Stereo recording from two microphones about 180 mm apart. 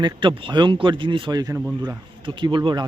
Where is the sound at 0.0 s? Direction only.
25° right (ahead or behind).